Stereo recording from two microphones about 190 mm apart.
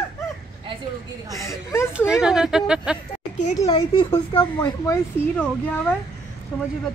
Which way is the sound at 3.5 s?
20° left (ahead or behind).